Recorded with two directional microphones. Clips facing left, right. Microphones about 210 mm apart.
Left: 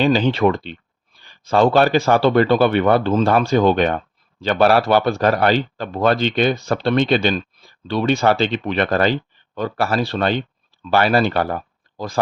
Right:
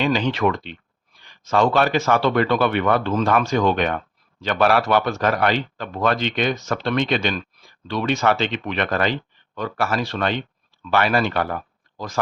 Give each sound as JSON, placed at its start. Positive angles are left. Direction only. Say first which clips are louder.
{"t": 0.0, "sound": "speech", "louder": "left 4 dB", "side_deg": 30}